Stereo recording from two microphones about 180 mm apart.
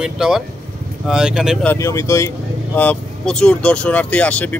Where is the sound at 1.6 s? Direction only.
15° left (ahead or behind).